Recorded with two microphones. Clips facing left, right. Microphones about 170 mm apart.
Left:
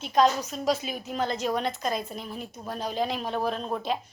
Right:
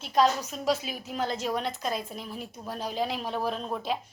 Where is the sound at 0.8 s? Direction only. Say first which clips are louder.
Left 2 dB; 5° right (ahead or behind).